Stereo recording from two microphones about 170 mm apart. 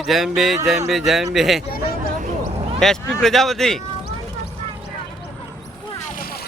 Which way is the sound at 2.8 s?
Centre (ahead or behind).